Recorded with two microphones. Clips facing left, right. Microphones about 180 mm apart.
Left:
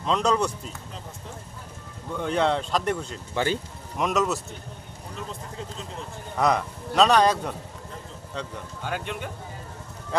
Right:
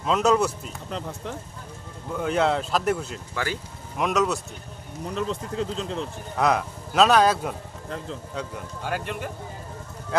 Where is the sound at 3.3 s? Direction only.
25° left (ahead or behind).